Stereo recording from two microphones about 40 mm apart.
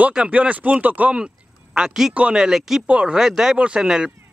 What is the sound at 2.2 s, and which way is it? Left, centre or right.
Speech, right.